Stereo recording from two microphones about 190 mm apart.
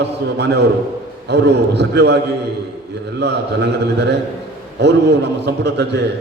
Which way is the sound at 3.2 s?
60° right (ahead or behind).